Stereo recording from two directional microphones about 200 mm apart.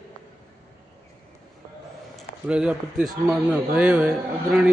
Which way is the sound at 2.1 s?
5° right (ahead or behind).